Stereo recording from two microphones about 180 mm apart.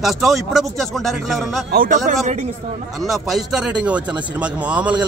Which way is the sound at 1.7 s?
50° right (ahead or behind).